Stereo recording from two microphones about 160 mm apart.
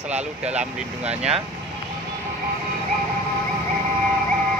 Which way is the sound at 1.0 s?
40° right (ahead or behind).